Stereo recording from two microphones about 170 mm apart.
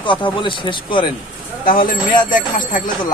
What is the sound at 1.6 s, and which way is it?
Speech, 55° left (ahead or behind).